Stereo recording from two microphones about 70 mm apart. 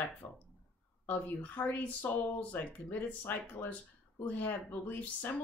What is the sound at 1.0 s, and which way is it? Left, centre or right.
Speech, left.